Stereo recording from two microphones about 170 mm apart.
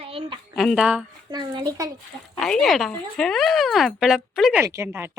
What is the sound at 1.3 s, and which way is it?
Speech, 25° right (ahead or behind).